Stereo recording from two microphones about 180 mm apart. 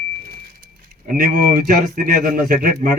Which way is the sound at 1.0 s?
50° right (ahead or behind).